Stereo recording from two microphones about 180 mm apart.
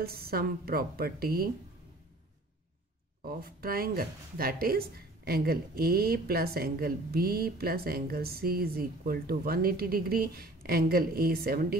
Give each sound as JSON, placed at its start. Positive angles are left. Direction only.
{"t": 0.0, "sound": "speech", "side_deg": -55}
{"t": 3.3, "sound": "speech", "side_deg": -55}